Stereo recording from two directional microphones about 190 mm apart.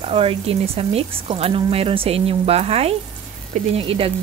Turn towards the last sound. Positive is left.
turn(degrees=-30)  # may be behind; listen again after turning